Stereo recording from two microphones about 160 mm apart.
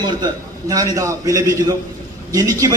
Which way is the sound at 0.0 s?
25° right (ahead or behind).